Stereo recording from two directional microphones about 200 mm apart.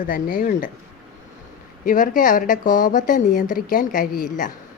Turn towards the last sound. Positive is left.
turn(degrees=45)  # may be behind; listen again after turning